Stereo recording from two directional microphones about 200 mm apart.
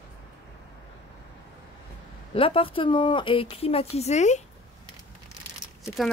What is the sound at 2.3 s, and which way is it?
Speech, 30° left (ahead or behind).